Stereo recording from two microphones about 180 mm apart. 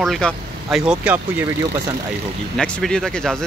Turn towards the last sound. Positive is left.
turn(degrees=5)  # may be behind; listen again after turning